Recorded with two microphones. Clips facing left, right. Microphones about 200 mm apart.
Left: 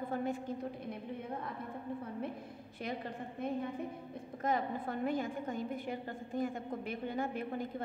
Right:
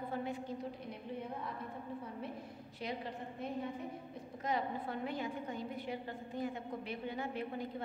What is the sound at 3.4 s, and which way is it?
A woman's voice, 55° left (ahead or behind).